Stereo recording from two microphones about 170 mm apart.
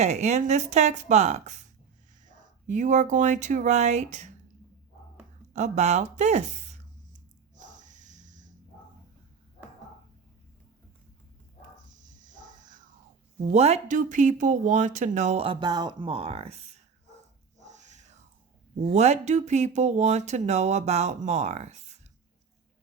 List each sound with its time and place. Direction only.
0.0 s speech: 40° right (ahead or behind)
5.5 s speech: 45° right (ahead or behind)
7.5 s snort: 50° right (ahead or behind)
11.9 s a sound: 50° right (ahead or behind)
13.4 s speech: 40° right (ahead or behind)
17.6 s a sound: 45° right (ahead or behind)
18.9 s speech: 40° right (ahead or behind)